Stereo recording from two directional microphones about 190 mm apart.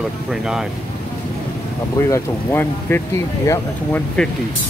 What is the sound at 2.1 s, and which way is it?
Speech, 10° left (ahead or behind).